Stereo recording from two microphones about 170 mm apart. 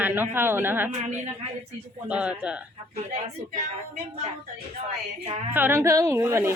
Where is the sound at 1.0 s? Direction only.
45° right (ahead or behind).